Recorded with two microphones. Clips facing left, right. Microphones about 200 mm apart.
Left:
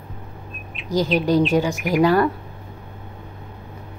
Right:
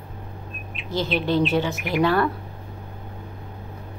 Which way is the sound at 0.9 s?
40° left (ahead or behind).